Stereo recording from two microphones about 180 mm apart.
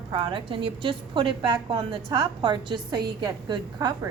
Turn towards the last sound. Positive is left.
turn(degrees=-20)  # may be behind; listen again after turning